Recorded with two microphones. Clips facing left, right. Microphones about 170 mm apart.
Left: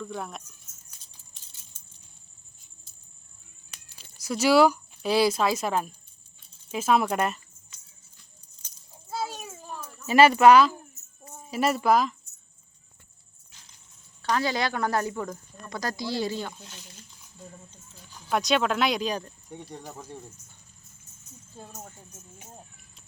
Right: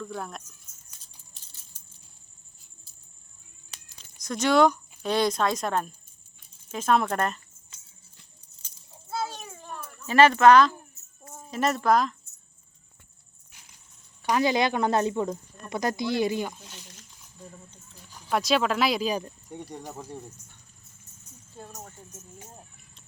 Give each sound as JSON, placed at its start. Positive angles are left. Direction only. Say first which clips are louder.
{"t": 0.0, "sound": "speech", "louder": "even", "side_deg": 0}
{"t": 3.9, "sound": "speech", "louder": "left 2 dB", "side_deg": 5}
{"t": 9.0, "sound": "children playing", "louder": "even", "side_deg": 10}
{"t": 10.1, "sound": "speech", "louder": "left 1 dB", "side_deg": 10}
{"t": 14.2, "sound": "speech", "louder": "right 3 dB", "side_deg": -15}
{"t": 18.1, "sound": "speech", "louder": "even", "side_deg": 0}